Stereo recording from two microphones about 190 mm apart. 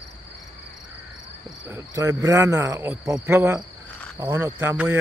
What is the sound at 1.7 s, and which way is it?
Cricket, 15° right (ahead or behind).